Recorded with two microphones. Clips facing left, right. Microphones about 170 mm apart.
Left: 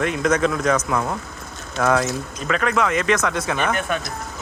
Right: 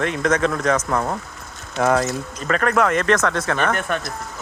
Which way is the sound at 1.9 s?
Centre (ahead or behind).